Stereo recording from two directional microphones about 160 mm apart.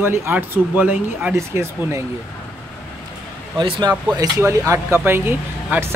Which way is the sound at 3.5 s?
30° right (ahead or behind).